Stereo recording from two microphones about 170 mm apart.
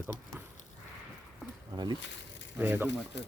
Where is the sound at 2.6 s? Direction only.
10° right (ahead or behind).